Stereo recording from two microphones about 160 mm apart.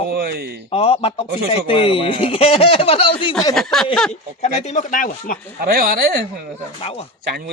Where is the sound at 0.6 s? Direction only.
35° left (ahead or behind).